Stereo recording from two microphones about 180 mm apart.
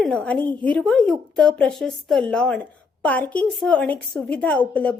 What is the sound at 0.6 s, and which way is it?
Speech, 5° left (ahead or behind).